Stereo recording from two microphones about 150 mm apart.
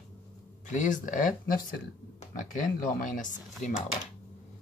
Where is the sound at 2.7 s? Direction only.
60° left (ahead or behind).